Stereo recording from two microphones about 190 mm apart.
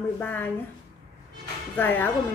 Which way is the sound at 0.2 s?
10° left (ahead or behind).